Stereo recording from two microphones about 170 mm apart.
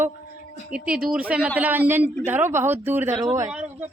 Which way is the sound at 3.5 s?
10° right (ahead or behind).